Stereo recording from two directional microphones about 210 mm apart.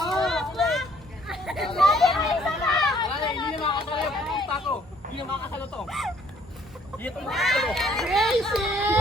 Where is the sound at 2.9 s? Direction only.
20° left (ahead or behind).